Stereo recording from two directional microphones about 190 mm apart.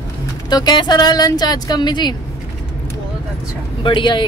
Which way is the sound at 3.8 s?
25° left (ahead or behind).